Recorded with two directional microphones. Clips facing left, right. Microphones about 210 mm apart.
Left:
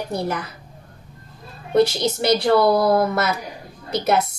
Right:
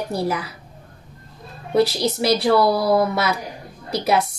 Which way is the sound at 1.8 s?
Centre (ahead or behind).